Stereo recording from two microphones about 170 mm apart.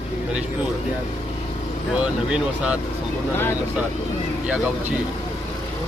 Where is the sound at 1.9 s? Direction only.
5° right (ahead or behind).